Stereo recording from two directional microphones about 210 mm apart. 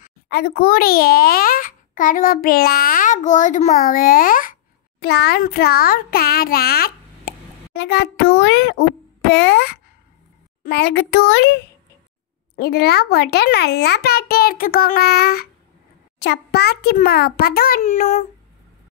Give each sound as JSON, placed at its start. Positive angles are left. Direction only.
{"t": 0.0, "sound": "a child's voice", "side_deg": 50}